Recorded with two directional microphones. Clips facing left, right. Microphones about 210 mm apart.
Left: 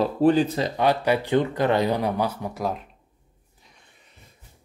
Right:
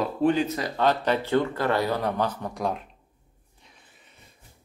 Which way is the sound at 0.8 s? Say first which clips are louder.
Left 1 dB; 10° left (ahead or behind).